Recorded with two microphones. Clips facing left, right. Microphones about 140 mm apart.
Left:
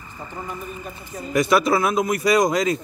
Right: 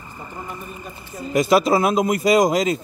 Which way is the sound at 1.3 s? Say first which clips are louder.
Right 2 dB; 25° right (ahead or behind).